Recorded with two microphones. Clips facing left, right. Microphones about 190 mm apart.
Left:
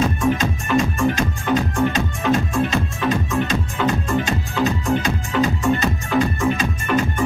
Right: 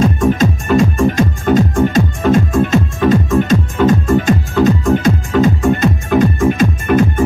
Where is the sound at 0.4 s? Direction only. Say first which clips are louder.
Right 7 dB; 35° right (ahead or behind).